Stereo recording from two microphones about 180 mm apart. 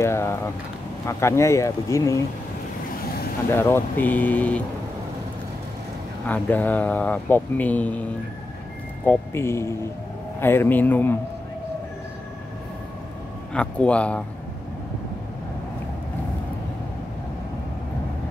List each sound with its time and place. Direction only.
0.0 s speech: 15° left (ahead or behind)
3.5 s speech: 10° left (ahead or behind)
6.2 s speech: 10° left (ahead or behind)
13.5 s speech: 5° left (ahead or behind)